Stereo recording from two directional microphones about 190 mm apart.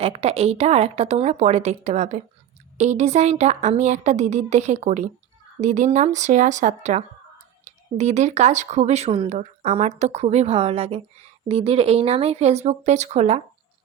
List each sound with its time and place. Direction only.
0.0 s speech: 30° right (ahead or behind)